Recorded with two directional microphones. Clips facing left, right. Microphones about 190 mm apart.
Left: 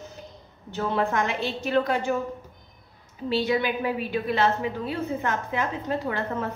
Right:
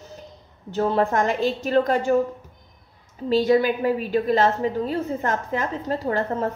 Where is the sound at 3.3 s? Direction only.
45° right (ahead or behind).